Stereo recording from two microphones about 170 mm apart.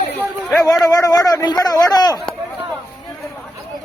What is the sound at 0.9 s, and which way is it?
Speech, 20° left (ahead or behind).